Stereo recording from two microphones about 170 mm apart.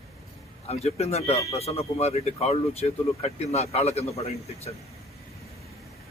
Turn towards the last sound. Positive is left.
turn(degrees=40)  # may be behind; listen again after turning